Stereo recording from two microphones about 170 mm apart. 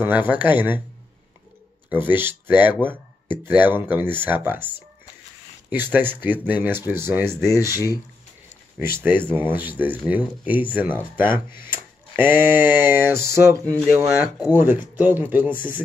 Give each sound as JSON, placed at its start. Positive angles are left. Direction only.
{"t": 0.0, "sound": "speech", "side_deg": -10}
{"t": 1.9, "sound": "speech", "side_deg": -10}
{"t": 5.7, "sound": "speech", "side_deg": -10}
{"t": 11.6, "sound": "a sound", "side_deg": -10}
{"t": 13.7, "sound": "speech", "side_deg": -10}